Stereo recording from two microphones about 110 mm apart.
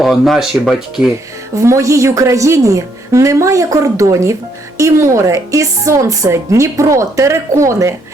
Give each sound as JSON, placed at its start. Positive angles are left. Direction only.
{"t": 0.0, "sound": "speech", "side_deg": 0}
{"t": 1.5, "sound": "speech", "side_deg": -30}